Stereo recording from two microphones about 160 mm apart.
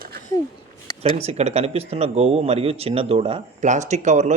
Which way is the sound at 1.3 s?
40° right (ahead or behind).